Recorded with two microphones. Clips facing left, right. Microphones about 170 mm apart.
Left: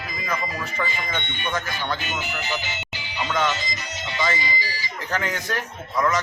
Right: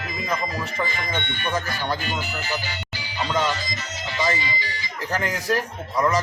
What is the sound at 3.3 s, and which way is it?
Speech, 35° right (ahead or behind).